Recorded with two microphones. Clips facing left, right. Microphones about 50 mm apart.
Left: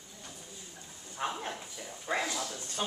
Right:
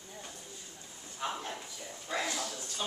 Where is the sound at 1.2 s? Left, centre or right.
Left.